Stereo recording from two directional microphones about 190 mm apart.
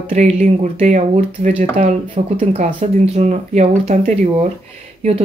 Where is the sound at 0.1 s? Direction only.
35° right (ahead or behind).